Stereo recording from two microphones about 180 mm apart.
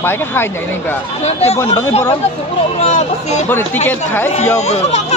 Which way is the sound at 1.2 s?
35° left (ahead or behind).